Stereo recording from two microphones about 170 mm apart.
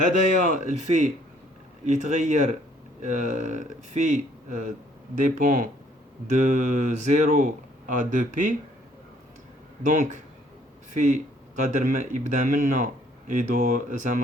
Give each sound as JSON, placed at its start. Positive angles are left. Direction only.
{"t": 0.1, "sound": "speech", "side_deg": -50}
{"t": 9.8, "sound": "speech", "side_deg": -50}